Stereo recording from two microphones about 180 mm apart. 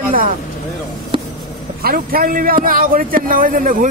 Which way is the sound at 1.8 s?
55° right (ahead or behind).